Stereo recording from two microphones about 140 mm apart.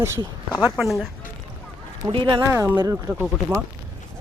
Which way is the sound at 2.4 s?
20° right (ahead or behind).